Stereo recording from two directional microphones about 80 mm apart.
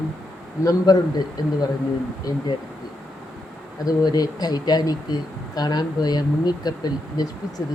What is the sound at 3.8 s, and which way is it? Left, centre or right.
Speech, left.